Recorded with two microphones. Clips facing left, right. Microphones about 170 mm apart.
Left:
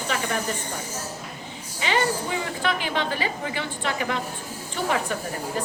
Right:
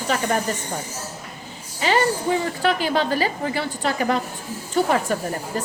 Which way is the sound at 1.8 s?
40° right (ahead or behind).